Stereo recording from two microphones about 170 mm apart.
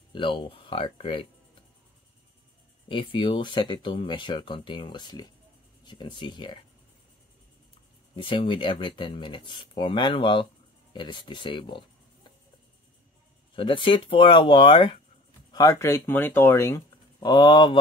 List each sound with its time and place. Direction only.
0.1 s speech: 30° left (ahead or behind)
2.9 s speech: 30° left (ahead or behind)
8.2 s speech: 30° left (ahead or behind)
13.6 s speech: 30° left (ahead or behind)
15.5 s speech: 20° left (ahead or behind)